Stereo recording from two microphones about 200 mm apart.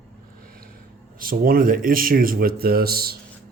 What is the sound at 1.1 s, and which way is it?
Speech, 45° right (ahead or behind).